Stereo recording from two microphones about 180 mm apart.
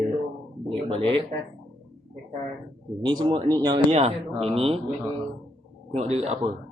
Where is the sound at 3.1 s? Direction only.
20° right (ahead or behind).